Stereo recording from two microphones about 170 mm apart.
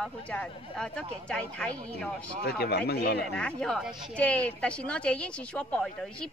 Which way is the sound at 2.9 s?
70° left (ahead or behind).